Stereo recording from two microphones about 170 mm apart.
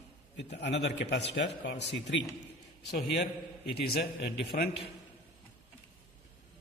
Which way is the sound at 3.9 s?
75° left (ahead or behind).